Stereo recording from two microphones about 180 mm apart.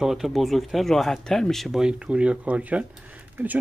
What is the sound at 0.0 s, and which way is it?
Speech, centre (ahead or behind).